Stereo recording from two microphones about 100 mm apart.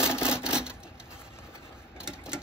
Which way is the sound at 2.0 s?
10° right (ahead or behind).